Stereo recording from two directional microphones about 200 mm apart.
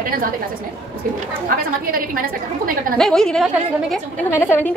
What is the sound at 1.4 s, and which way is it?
Speech, 45° right (ahead or behind).